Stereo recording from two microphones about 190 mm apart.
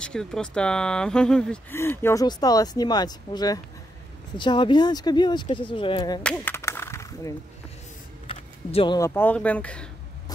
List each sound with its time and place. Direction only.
0.0 s speech: 5° left (ahead or behind); by 6.2 s 25° left (ahead or behind)
6.3 s a sound: 15° left (ahead or behind)
8.3 s speech: 25° left (ahead or behind); by 9.8 s 5° left (ahead or behind)